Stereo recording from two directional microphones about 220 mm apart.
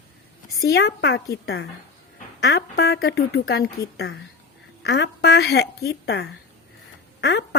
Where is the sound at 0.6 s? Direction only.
45° left (ahead or behind).